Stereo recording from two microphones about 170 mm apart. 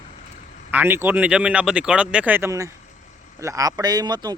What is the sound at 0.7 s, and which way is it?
Speech, 10° right (ahead or behind).